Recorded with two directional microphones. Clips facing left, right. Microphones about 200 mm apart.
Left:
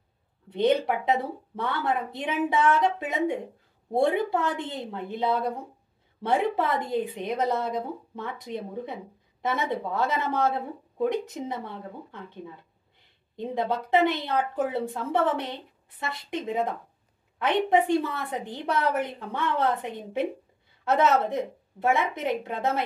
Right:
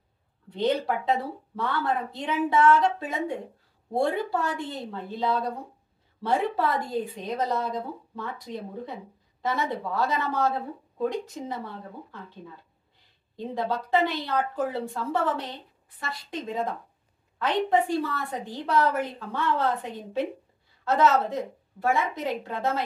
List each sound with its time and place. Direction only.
0.5 s a woman's voice: 20° left (ahead or behind)
13.4 s a woman's voice: 20° left (ahead or behind)